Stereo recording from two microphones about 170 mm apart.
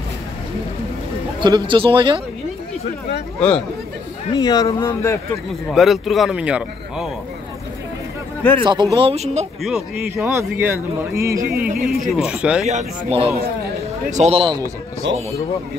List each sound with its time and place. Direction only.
1.4 s speech: 30° right (ahead or behind)
3.3 s speech: 5° left (ahead or behind)
4.3 s speech: 25° left (ahead or behind)
5.7 s speech: centre (ahead or behind)
8.6 s speech: 25° right (ahead or behind)
9.1 s speech: 40° right (ahead or behind)
9.6 s speech: centre (ahead or behind)
10.0 s speech: 15° right (ahead or behind)
11.4 s speech: 60° right (ahead or behind)
11.9 s speech: 5° right (ahead or behind)
12.6 s speech: 35° right (ahead or behind)
15.0 s speech: 90° right